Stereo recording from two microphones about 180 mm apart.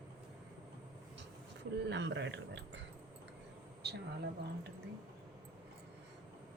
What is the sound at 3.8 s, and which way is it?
Speech, 65° right (ahead or behind).